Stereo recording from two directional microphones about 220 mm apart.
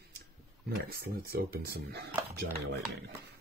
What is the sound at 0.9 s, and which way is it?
Speech, 45° right (ahead or behind).